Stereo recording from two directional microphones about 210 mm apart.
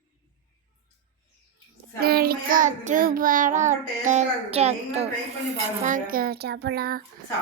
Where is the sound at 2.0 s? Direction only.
45° right (ahead or behind); by 5.1 s 30° right (ahead or behind).